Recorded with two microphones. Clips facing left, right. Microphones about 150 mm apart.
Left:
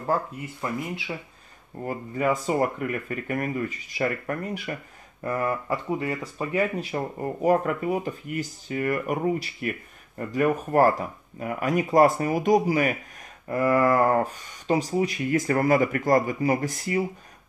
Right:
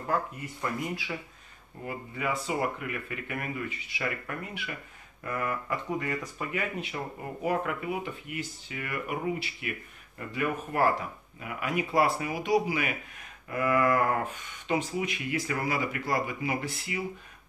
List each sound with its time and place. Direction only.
0.0 s speech: 30° left (ahead or behind)
1.9 s speech: 45° left (ahead or behind)